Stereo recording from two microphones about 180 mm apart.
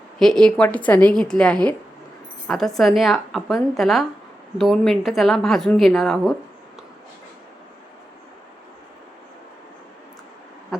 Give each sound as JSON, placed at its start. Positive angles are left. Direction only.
{"t": 0.2, "sound": "speech", "side_deg": 5}